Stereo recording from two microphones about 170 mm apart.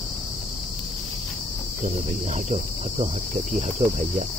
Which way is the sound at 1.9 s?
45° right (ahead or behind).